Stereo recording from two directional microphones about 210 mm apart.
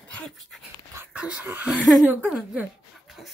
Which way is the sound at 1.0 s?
5° right (ahead or behind).